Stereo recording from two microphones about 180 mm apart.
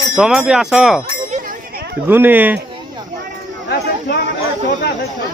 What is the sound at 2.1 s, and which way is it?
Speech, 10° right (ahead or behind).